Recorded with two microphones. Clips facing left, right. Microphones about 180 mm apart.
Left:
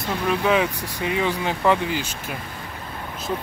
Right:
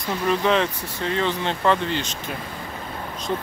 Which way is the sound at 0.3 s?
5° left (ahead or behind).